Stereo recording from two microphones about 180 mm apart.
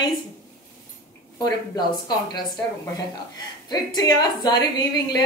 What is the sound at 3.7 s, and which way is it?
A woman's voice, 25° left (ahead or behind).